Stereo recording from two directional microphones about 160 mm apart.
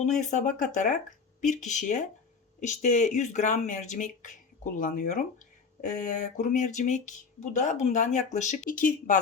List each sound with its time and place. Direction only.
0.0 s speech: 50° left (ahead or behind)